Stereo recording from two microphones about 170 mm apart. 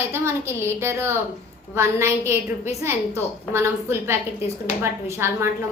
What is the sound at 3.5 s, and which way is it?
A woman's voice, 15° right (ahead or behind).